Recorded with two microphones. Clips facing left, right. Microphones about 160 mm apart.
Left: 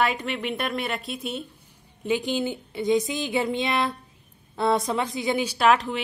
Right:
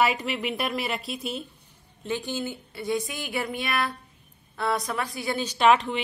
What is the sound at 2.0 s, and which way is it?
A woman's voice, 15° left (ahead or behind).